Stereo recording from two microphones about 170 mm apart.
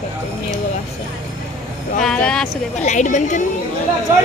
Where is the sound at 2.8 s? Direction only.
45° left (ahead or behind).